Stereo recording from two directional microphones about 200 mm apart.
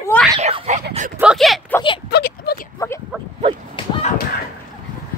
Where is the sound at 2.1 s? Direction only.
50° left (ahead or behind).